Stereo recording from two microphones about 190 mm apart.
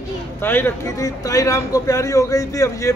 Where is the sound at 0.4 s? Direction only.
10° left (ahead or behind).